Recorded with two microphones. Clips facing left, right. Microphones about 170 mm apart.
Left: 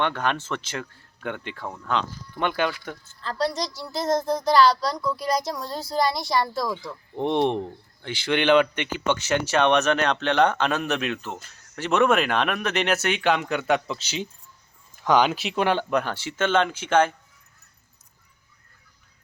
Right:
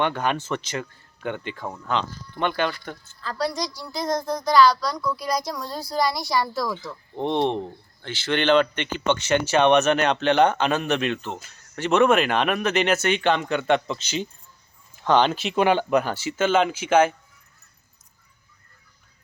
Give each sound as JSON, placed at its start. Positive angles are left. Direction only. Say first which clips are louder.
{"t": 0.0, "sound": "speech", "louder": "right 1 dB", "side_deg": -5}
{"t": 4.0, "sound": "a child's voice", "louder": "left 2 dB", "side_deg": 25}